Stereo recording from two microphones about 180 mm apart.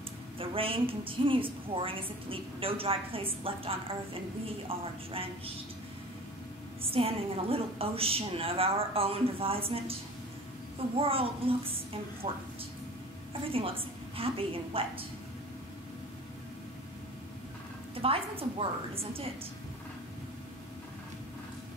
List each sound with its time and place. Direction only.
0.4 s a woman's voice: 30° right (ahead or behind)
6.8 s a woman's voice: 30° right (ahead or behind)
11.0 s a woman's voice: 30° right (ahead or behind)
13.3 s a woman's voice: 30° right (ahead or behind)
18.0 s a woman's voice: 30° right (ahead or behind)